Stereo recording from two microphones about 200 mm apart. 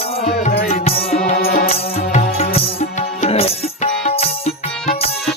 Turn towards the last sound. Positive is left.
turn(degrees=30)  # may be behind; listen again after turning